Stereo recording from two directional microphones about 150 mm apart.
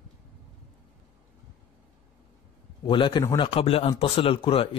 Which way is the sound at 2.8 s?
30° left (ahead or behind).